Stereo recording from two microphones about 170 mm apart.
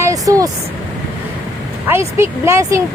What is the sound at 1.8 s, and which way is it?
Speech, 15° right (ahead or behind).